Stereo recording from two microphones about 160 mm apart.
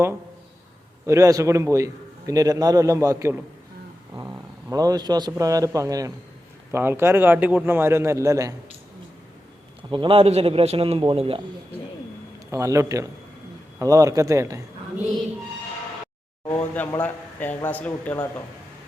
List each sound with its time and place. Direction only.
1.0 s a man's voice: 20° right (ahead or behind)
4.1 s a sound: 20° right (ahead or behind)
5.4 s a man's voice: 20° right (ahead or behind)
9.9 s a man's voice: 35° right (ahead or behind)
12.5 s a man's voice: 20° right (ahead or behind)
16.5 s speech: 10° left (ahead or behind)